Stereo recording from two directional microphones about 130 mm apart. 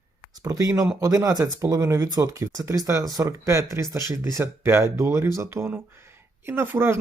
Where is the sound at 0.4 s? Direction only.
25° right (ahead or behind).